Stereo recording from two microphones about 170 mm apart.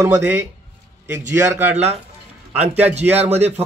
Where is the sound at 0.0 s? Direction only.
15° right (ahead or behind).